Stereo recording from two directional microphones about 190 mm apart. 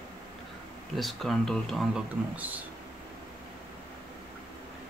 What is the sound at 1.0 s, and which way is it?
Speech, centre (ahead or behind).